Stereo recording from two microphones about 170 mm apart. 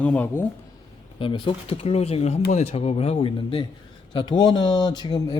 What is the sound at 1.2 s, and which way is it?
Speech, 30° left (ahead or behind).